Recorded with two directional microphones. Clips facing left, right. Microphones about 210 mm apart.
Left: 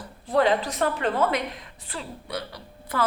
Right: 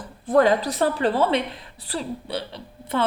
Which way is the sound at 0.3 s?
45° right (ahead or behind).